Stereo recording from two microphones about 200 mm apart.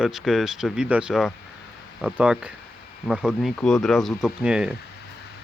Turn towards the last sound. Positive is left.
turn(degrees=-5)  # may be behind; listen again after turning